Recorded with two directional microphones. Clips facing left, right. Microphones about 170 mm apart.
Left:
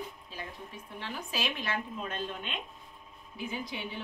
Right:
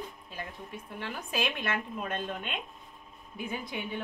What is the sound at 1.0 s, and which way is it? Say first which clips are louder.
Speech: right 3 dB; 55° right (ahead or behind).